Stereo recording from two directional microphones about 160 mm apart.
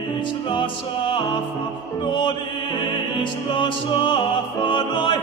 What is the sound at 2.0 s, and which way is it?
Music, 30° left (ahead or behind).